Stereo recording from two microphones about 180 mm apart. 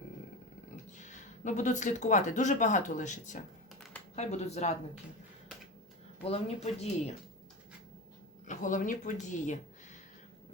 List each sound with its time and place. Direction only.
1.0 s speech: 45° left (ahead or behind)
6.2 s speech: 35° left (ahead or behind)
8.4 s speech: 45° left (ahead or behind)